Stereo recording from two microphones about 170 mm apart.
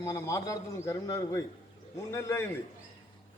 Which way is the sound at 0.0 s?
15° left (ahead or behind).